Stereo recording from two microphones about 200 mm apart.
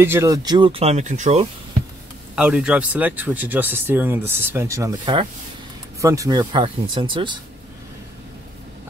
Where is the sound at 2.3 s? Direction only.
5° right (ahead or behind); by 7.3 s 25° right (ahead or behind).